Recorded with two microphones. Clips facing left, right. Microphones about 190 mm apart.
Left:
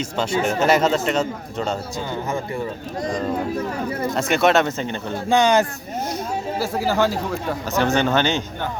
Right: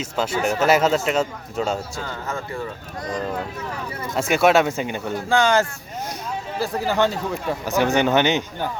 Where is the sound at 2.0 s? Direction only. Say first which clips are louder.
Left 4 dB; 15° left (ahead or behind).